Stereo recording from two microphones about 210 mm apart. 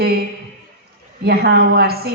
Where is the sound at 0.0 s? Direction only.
50° right (ahead or behind).